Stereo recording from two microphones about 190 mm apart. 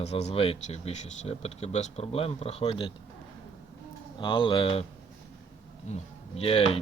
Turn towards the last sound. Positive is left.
turn(degrees=30)  # may be behind; listen again after turning